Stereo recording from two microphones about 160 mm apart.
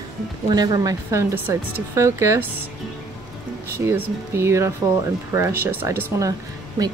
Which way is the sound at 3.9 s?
15° right (ahead or behind).